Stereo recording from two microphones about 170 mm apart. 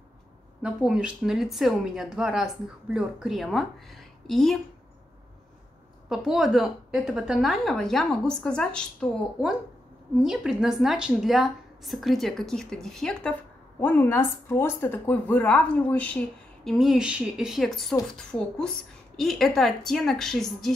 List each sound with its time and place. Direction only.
0.6 s a woman's voice: 5° right (ahead or behind)
6.0 s a woman's voice: centre (ahead or behind)
10.2 s a woman's voice: 5° right (ahead or behind)
19.1 s a woman's voice: centre (ahead or behind)